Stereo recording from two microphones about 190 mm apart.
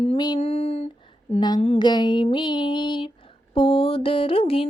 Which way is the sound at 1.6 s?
35° left (ahead or behind).